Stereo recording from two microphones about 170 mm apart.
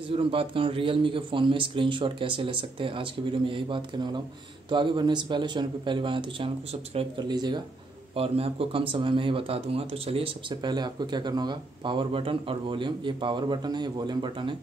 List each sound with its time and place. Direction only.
0.1 s a man's voice: 30° right (ahead or behind)